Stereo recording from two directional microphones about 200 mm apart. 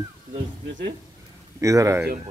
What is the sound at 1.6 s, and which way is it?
Speech, 15° right (ahead or behind).